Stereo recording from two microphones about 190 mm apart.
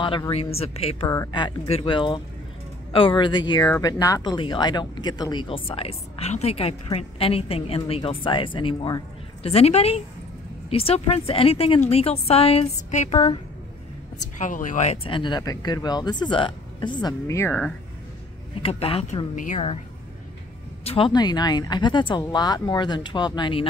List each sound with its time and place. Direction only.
0.0 s a woman's voice: 25° left (ahead or behind)
1.0 s a woman's voice: 20° left (ahead or behind); by 13.4 s 35° left (ahead or behind)
14.4 s speech: 45° left (ahead or behind); by 17.7 s 5° left (ahead or behind)
18.6 s a woman's voice: 30° left (ahead or behind)
19.3 s a woman's voice: 40° left (ahead or behind)
20.8 s speech: 30° left (ahead or behind)